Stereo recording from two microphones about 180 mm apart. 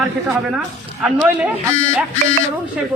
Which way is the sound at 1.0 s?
5° right (ahead or behind).